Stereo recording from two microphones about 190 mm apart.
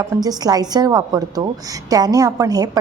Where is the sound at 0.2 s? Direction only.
20° right (ahead or behind).